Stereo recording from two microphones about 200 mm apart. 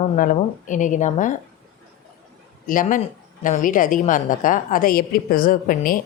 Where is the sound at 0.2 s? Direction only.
40° left (ahead or behind).